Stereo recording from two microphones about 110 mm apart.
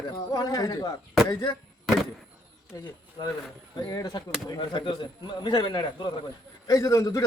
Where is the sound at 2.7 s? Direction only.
30° left (ahead or behind).